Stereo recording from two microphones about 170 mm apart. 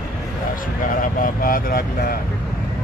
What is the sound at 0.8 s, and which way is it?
Speech, 55° left (ahead or behind).